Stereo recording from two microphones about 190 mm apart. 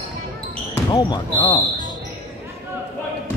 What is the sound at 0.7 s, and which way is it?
Speech, 20° left (ahead or behind).